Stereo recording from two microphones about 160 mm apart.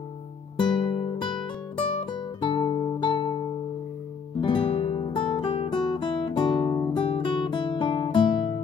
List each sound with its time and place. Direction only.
0.6 s music: 30° left (ahead or behind)
4.4 s guitar: 30° left (ahead or behind)